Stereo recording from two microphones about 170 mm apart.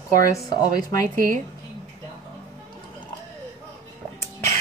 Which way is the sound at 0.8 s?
55° right (ahead or behind).